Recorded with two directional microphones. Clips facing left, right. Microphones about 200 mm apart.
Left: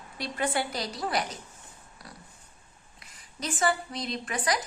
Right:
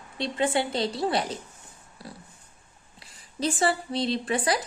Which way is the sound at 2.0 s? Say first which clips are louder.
Right 6 dB; 30° right (ahead or behind).